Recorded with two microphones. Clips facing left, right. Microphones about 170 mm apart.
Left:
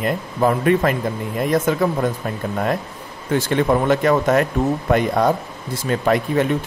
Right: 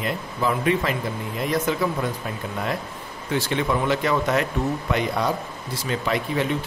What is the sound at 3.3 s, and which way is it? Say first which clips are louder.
Speech: left 6 dB; 50° left (ahead or behind).